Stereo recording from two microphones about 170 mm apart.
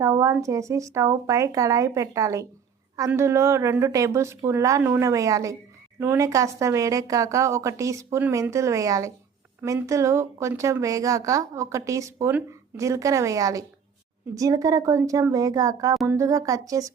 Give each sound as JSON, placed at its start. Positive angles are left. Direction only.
{"t": 0.0, "sound": "a woman's voice", "side_deg": -15}